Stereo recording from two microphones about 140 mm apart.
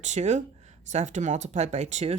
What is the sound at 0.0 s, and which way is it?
Speech, 55° right (ahead or behind).